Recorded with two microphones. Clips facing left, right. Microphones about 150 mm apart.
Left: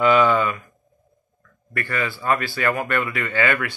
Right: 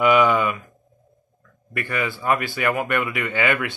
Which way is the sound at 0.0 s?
15° right (ahead or behind).